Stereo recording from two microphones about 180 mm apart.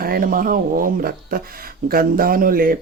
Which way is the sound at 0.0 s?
55° right (ahead or behind).